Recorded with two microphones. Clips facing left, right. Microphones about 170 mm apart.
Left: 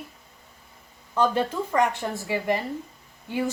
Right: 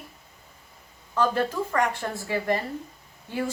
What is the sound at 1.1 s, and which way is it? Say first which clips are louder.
A woman's voice: left 1 dB; 20° left (ahead or behind).